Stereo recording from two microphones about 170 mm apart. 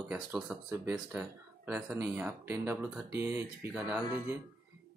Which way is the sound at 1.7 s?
5° right (ahead or behind).